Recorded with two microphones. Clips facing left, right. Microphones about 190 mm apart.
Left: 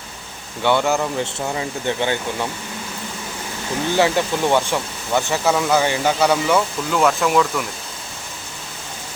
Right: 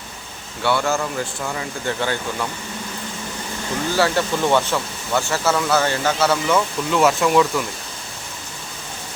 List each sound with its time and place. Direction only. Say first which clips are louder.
0.6 s speech: left 2 dB; 20° left (ahead or behind)
3.9 s speech: left 2 dB; 15° left (ahead or behind)
6.9 s speech: right 1 dB; centre (ahead or behind)